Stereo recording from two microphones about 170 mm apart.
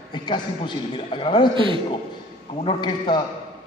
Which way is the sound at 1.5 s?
30° right (ahead or behind).